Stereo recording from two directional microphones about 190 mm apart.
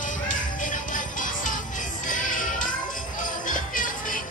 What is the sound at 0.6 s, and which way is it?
Music, 45° left (ahead or behind).